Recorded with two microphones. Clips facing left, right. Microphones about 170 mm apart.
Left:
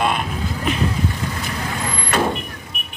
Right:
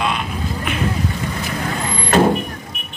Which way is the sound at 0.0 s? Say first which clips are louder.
Left 1 dB; 45° left (ahead or behind).